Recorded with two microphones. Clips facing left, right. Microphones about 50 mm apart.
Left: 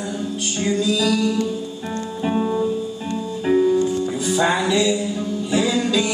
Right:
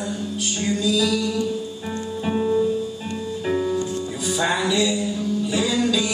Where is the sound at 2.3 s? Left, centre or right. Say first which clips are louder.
Even; centre.